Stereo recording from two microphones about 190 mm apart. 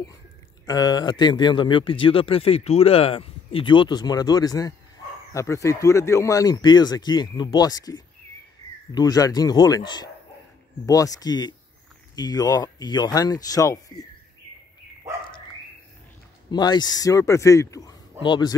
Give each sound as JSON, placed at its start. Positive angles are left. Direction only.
{"t": 0.7, "sound": "speech", "side_deg": 20}
{"t": 16.4, "sound": "a man's voice", "side_deg": 20}